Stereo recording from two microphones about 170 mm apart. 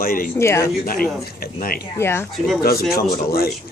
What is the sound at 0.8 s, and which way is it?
Speech, 60° left (ahead or behind).